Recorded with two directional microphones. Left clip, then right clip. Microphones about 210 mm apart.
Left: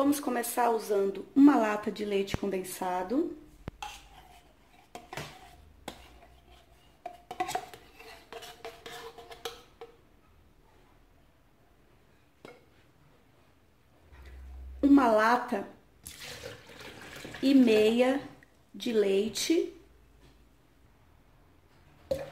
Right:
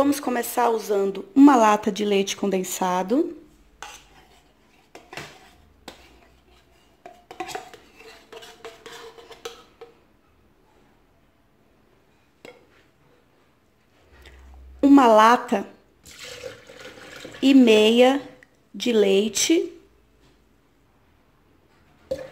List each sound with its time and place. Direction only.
0.0 s speech: 30° right (ahead or behind); by 3.2 s 45° right (ahead or behind)
7.0 s music: 5° left (ahead or behind)
14.8 s speech: 30° right (ahead or behind)
17.4 s speech: 35° right (ahead or behind)